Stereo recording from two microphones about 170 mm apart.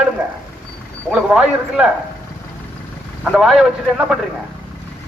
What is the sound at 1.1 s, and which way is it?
Speech, 5° right (ahead or behind).